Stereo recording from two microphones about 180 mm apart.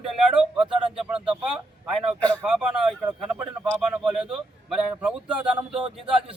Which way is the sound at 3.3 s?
5° right (ahead or behind).